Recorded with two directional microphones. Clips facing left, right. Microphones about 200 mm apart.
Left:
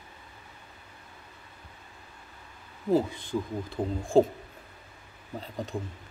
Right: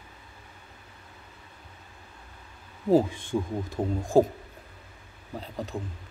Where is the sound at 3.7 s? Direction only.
40° right (ahead or behind).